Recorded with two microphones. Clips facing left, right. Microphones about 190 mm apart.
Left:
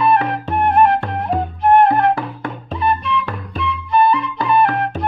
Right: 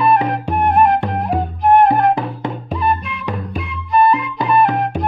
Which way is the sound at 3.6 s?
Centre (ahead or behind).